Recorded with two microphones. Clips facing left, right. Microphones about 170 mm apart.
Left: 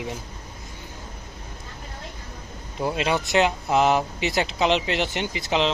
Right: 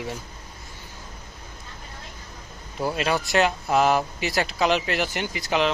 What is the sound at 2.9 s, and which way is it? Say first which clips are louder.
Speech: left 1 dB; 20° left (ahead or behind).